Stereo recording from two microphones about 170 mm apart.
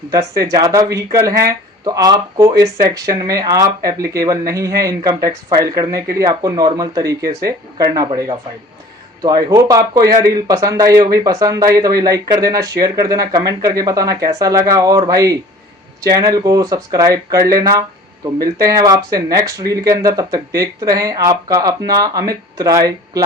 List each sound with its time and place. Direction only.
0.1 s speech: 20° right (ahead or behind)